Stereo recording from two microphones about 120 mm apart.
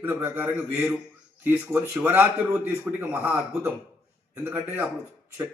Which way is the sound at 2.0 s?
15° right (ahead or behind).